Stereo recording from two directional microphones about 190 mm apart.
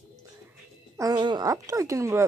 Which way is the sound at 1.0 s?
20° right (ahead or behind).